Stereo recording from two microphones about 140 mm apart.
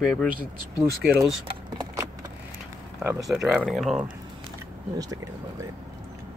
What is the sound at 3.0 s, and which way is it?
Speech, 15° right (ahead or behind).